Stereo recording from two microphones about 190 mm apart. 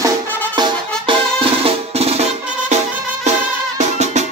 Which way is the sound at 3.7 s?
35° right (ahead or behind).